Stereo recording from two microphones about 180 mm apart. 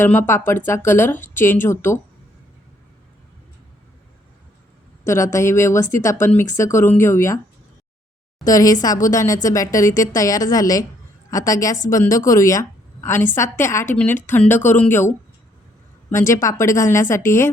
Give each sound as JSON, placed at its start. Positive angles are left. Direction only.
{"t": 0.0, "sound": "speech", "side_deg": 15}
{"t": 5.0, "sound": "speech", "side_deg": 15}
{"t": 8.4, "sound": "a woman's voice", "side_deg": 20}